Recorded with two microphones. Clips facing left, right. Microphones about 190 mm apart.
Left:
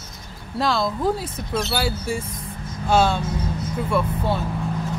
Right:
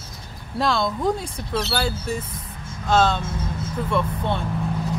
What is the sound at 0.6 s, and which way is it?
Speech, centre (ahead or behind).